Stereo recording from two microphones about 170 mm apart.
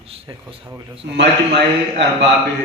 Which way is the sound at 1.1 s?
90° right.